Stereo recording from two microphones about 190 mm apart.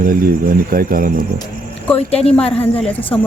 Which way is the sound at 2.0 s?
30° left (ahead or behind).